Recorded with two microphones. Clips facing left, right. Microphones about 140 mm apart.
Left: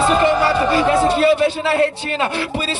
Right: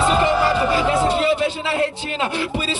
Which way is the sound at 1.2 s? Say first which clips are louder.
Left 5 dB; 55° left (ahead or behind).